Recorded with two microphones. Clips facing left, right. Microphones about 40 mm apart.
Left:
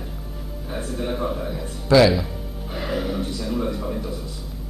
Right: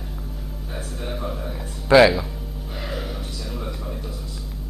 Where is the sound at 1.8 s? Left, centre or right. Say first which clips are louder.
Right 2 dB; right.